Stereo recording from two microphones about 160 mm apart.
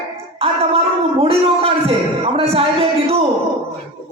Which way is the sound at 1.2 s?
35° right (ahead or behind).